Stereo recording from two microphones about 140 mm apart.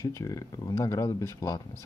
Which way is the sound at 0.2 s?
25° left (ahead or behind).